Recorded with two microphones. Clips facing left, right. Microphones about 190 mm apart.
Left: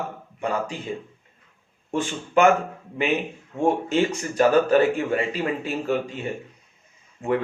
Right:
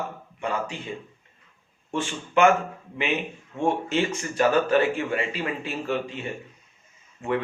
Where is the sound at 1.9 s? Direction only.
40° left (ahead or behind).